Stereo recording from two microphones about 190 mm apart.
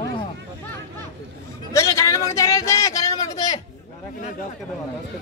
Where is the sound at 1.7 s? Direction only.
15° left (ahead or behind).